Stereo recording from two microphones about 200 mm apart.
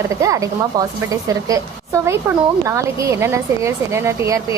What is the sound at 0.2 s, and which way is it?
Speech, 15° right (ahead or behind).